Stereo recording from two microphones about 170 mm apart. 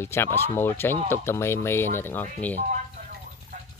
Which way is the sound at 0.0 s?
15° left (ahead or behind).